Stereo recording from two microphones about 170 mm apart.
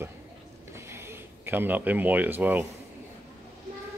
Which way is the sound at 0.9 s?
15° right (ahead or behind).